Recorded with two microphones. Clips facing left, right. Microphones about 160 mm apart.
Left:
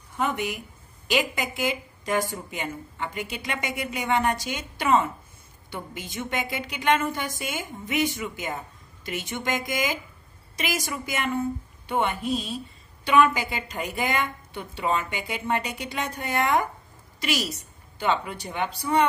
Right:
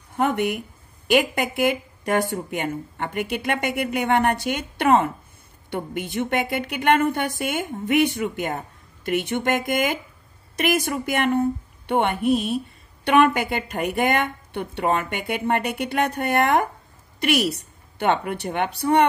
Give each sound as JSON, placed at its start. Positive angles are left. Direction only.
{"t": 0.1, "sound": "a woman's voice", "side_deg": -60}